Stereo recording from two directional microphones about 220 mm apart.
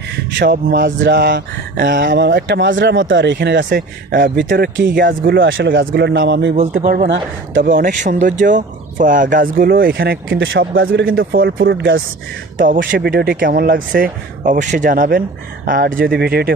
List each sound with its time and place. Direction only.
0.4 s speech: 40° right (ahead or behind)
1.0 s speech: 50° right (ahead or behind)
5.4 s speech: 60° right (ahead or behind)
6.5 s speech: 35° right (ahead or behind)
7.8 s speech: 35° right (ahead or behind); by 12.0 s 55° right (ahead or behind)
12.5 s speech: 40° right (ahead or behind)